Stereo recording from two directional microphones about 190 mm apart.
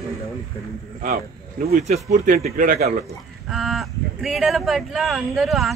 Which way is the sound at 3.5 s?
Centre (ahead or behind).